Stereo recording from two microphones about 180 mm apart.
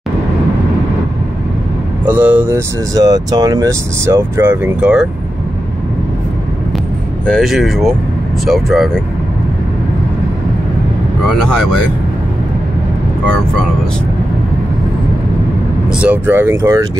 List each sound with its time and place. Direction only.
2.0 s speech: 10° right (ahead or behind)
7.2 s speech: centre (ahead or behind)
15.9 s speech: 5° right (ahead or behind)